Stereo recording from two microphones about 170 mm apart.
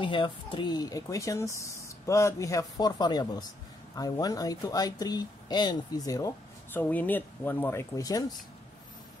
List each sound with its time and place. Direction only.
0.0 s speech: 30° left (ahead or behind)